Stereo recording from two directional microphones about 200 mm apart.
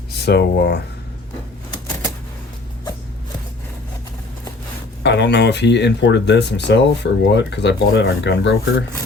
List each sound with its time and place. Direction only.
0.2 s speech: 55° left (ahead or behind)
5.0 s speech: 60° left (ahead or behind)